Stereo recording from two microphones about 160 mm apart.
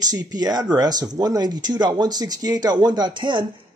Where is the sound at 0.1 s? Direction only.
25° right (ahead or behind).